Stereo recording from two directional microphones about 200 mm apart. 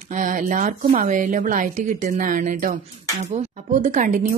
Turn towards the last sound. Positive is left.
turn(degrees=-40)  # may be behind; listen again after turning